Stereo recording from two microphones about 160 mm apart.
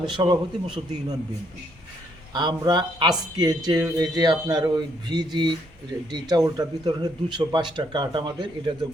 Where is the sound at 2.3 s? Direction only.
25° right (ahead or behind).